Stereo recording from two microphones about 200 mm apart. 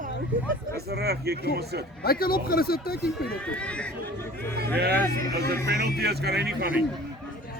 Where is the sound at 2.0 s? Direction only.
50° left (ahead or behind).